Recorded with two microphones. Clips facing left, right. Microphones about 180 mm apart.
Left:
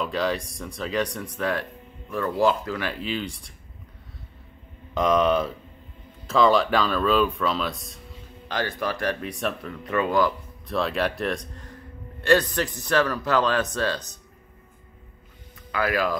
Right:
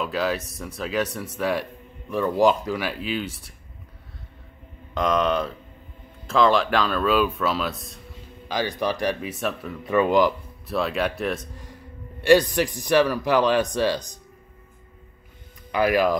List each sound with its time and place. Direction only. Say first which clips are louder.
0.0 s speech: right 1 dB; 5° right (ahead or behind)
4.9 s speech: left 1 dB; 5° left (ahead or behind)
8.5 s speech: right 3 dB; 15° right (ahead or behind)
9.2 s speech: right 1 dB; 5° right (ahead or behind); by 10.3 s 20° right (ahead or behind)
10.7 s speech: right 1 dB; centre (ahead or behind)
15.7 s speech: right 5 dB; 20° right (ahead or behind)